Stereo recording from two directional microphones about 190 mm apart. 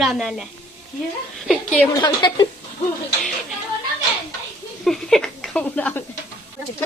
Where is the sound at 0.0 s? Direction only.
Centre (ahead or behind).